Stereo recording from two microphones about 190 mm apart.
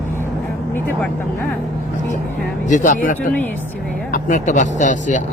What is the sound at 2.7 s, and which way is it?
Speech, 40° left (ahead or behind).